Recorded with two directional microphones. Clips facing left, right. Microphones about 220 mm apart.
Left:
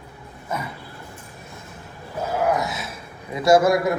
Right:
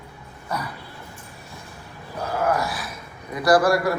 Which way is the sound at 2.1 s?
20° left (ahead or behind).